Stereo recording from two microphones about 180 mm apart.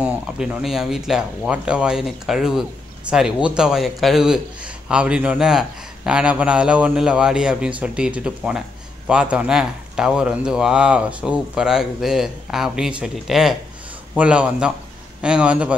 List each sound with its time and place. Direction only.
0.0 s speech: 5° right (ahead or behind)